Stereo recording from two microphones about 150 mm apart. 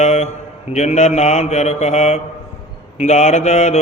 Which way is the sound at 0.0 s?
45° left (ahead or behind).